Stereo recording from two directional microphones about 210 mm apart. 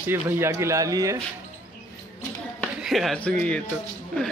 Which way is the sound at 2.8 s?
Centre (ahead or behind).